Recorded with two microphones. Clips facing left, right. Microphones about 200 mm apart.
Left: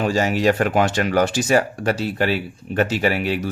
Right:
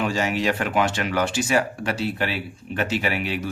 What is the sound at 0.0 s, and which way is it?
Speech, 40° left (ahead or behind).